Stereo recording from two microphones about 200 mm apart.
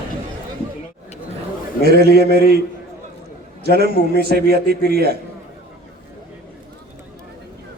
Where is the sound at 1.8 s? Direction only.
55° right (ahead or behind).